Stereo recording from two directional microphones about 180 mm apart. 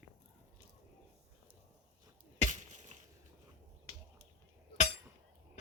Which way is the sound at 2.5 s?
40° right (ahead or behind).